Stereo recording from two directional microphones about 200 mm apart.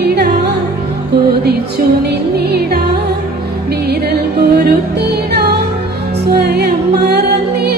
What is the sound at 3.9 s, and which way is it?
Music, 50° right (ahead or behind).